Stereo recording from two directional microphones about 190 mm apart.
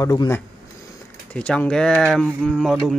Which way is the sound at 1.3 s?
5° left (ahead or behind).